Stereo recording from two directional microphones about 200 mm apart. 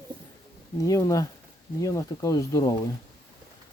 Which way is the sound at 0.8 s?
15° left (ahead or behind).